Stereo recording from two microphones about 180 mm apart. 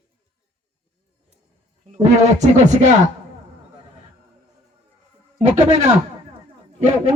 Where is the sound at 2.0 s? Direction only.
40° right (ahead or behind).